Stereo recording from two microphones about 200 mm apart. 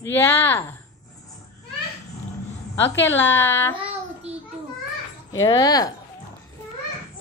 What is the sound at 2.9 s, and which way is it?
Speech, 65° left (ahead or behind).